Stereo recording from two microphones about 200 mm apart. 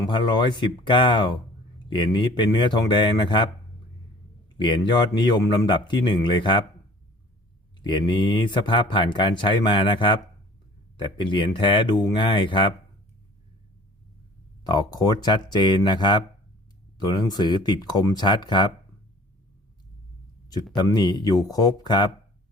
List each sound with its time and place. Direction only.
0.0 s speech: 20° left (ahead or behind)
4.5 s speech: 25° left (ahead or behind)
7.9 s speech: 20° left (ahead or behind)
14.7 s speech: 20° left (ahead or behind)
20.7 s speech: 20° left (ahead or behind)